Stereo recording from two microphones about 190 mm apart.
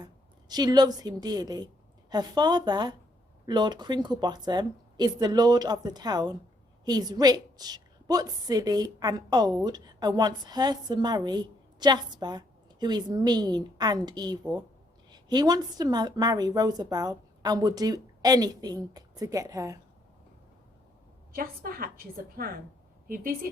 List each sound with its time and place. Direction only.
0.0 s a woman's voice: 20° right (ahead or behind)
21.3 s a woman's voice: 50° right (ahead or behind)